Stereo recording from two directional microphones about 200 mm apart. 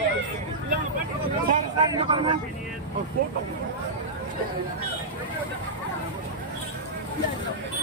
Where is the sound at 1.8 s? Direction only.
25° right (ahead or behind).